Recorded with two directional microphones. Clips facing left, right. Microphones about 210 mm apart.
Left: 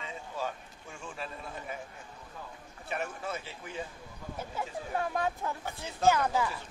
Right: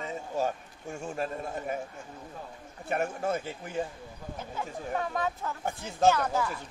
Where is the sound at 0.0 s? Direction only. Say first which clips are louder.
Right 6 dB; 45° right (ahead or behind).